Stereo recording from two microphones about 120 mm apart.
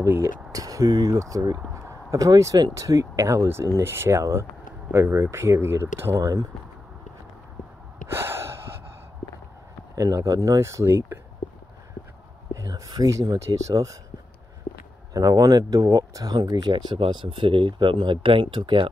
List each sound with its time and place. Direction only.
0.0 s speech: 25° right (ahead or behind)
6.1 s speech: 30° right (ahead or behind)
8.1 s gasp: 20° right (ahead or behind)
9.9 s speech: 25° right (ahead or behind)
12.5 s speech: 30° right (ahead or behind)
15.1 s speech: 30° right (ahead or behind)